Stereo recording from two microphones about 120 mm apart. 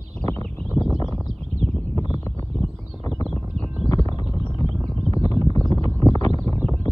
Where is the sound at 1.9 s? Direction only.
25° left (ahead or behind).